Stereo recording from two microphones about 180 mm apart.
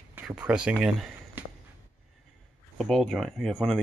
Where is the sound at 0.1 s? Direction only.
5° right (ahead or behind).